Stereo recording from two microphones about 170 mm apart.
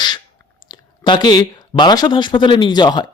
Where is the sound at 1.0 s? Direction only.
25° left (ahead or behind).